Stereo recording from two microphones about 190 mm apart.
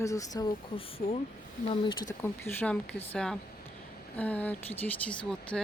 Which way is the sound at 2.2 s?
10° left (ahead or behind).